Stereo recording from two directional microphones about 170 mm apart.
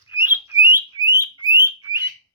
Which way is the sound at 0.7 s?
15° right (ahead or behind).